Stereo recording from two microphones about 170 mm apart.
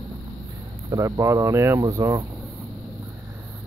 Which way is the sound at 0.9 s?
20° right (ahead or behind).